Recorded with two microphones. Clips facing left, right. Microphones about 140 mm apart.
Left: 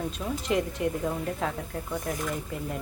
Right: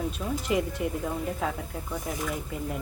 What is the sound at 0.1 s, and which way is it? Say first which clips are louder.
Speech: even; 5° right (ahead or behind).